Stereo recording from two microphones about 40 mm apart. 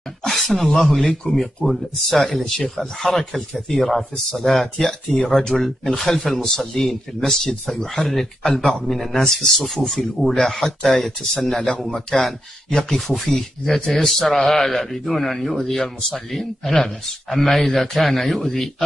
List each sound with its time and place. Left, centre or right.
0.3 s speech: centre
13.0 s speech: centre